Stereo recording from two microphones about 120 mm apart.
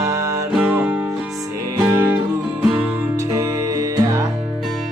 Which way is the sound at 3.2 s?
30° right (ahead or behind).